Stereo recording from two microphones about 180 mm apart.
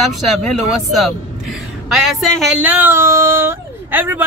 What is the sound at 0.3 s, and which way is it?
Speech, centre (ahead or behind).